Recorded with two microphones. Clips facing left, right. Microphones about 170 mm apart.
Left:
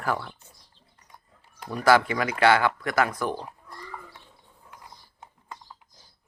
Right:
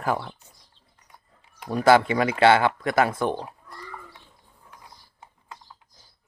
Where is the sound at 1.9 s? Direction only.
25° right (ahead or behind).